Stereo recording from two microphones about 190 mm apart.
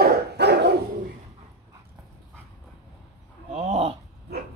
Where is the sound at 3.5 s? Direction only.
35° right (ahead or behind).